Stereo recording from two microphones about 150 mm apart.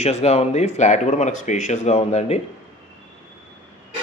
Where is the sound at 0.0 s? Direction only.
45° left (ahead or behind).